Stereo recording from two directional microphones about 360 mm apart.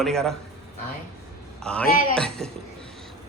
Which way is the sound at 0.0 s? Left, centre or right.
Centre.